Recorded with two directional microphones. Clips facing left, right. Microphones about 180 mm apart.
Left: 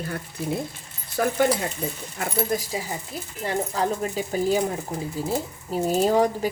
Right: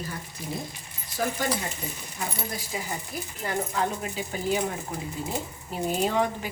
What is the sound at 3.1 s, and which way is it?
Speech, 30° left (ahead or behind).